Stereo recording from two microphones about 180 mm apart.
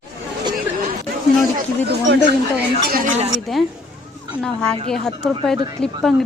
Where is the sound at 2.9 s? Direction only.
55° right (ahead or behind).